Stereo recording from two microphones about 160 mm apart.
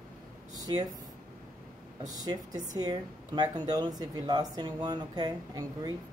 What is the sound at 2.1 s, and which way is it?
Speech, 25° right (ahead or behind).